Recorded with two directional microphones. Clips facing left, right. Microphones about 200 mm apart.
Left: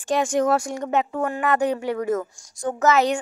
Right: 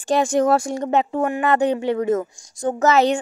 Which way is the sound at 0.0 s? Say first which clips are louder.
Right 3 dB; 30° right (ahead or behind).